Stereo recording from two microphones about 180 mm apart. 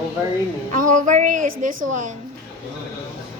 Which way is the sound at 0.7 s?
45° right (ahead or behind).